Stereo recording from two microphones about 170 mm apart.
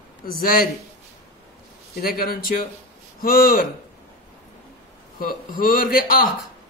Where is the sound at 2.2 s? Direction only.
55° left (ahead or behind).